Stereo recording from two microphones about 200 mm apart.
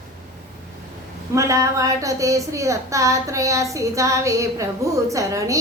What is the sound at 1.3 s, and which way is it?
A woman's voice, 15° right (ahead or behind).